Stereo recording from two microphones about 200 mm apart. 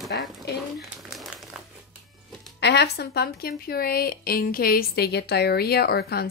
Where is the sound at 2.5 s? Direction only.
55° left (ahead or behind).